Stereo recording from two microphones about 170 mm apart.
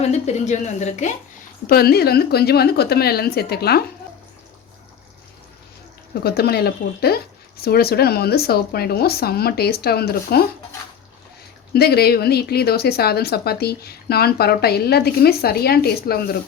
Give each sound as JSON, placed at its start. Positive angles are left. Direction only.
{"t": 0.1, "sound": "speech", "side_deg": 40}
{"t": 1.6, "sound": "a woman's voice", "side_deg": 65}
{"t": 6.2, "sound": "a woman's voice", "side_deg": 70}
{"t": 11.7, "sound": "a woman's voice", "side_deg": 70}